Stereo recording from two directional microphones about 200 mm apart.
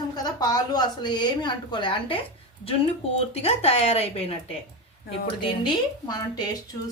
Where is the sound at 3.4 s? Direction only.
30° left (ahead or behind).